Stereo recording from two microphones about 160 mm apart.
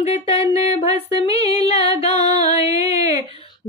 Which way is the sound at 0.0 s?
40° left (ahead or behind).